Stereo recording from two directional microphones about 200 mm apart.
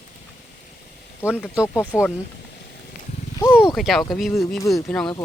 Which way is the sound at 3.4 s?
15° left (ahead or behind).